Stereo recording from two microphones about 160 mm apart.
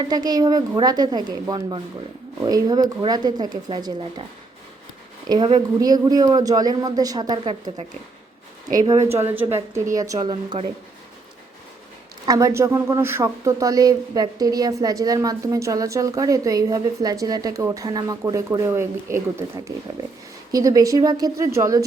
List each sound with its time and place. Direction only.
0.0 s speech: 25° right (ahead or behind)
5.3 s speech: 25° right (ahead or behind)
8.9 s a woman's voice: 20° right (ahead or behind)
12.2 s speech: 20° right (ahead or behind)